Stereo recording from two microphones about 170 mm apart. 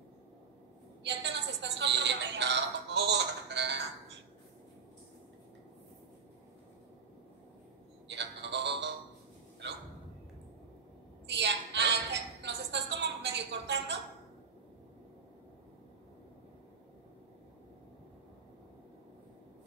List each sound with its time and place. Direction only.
1.0 s a woman's voice: 90° right
8.1 s music: 90° right
11.2 s a sound: 90° right